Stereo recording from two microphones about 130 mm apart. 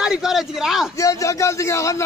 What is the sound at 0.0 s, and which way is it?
Speech, 5° right (ahead or behind).